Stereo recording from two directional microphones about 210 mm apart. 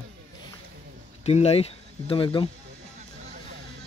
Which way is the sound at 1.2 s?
30° left (ahead or behind).